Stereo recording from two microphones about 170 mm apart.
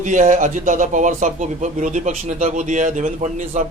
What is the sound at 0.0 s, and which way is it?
A man's voice, 50° right (ahead or behind).